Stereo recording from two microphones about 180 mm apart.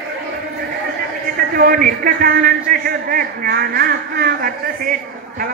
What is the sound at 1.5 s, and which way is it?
A man's voice, 55° right (ahead or behind).